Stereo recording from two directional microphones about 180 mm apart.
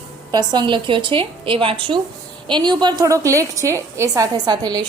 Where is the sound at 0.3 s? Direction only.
25° right (ahead or behind).